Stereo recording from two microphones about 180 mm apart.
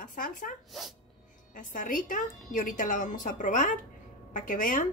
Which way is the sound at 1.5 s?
45° left (ahead or behind).